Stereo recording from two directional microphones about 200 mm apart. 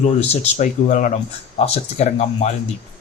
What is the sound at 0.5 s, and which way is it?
Speech, 40° left (ahead or behind).